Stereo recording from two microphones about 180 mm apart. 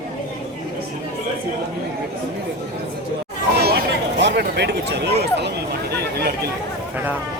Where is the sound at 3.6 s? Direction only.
60° right (ahead or behind).